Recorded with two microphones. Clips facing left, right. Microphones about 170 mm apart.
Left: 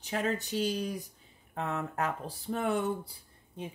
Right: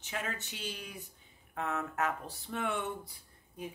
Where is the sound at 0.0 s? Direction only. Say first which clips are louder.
Left 8 dB; 35° left (ahead or behind).